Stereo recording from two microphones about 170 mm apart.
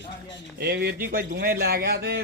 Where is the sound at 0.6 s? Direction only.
70° right (ahead or behind).